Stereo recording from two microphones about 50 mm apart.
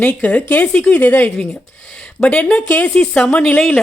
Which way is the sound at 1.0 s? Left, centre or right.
Left.